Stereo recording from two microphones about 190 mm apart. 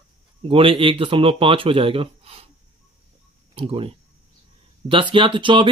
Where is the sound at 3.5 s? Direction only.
30° right (ahead or behind).